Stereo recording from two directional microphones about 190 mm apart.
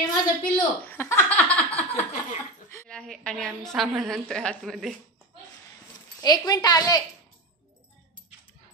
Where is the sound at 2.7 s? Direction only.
10° left (ahead or behind).